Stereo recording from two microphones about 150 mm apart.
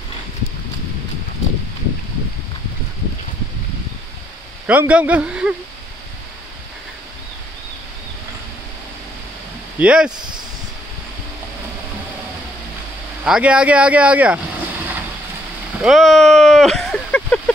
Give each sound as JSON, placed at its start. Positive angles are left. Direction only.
{"t": 4.6, "sound": "a man's voice", "side_deg": -10}
{"t": 9.8, "sound": "a man's voice", "side_deg": -5}
{"t": 10.1, "sound": "speech", "side_deg": -30}
{"t": 13.2, "sound": "speech", "side_deg": -10}
{"t": 15.8, "sound": "speech", "side_deg": 0}